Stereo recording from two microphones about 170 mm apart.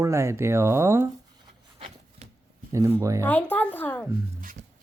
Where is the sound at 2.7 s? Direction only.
20° right (ahead or behind).